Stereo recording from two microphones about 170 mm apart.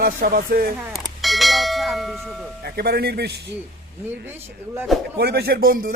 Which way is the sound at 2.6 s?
70° right (ahead or behind).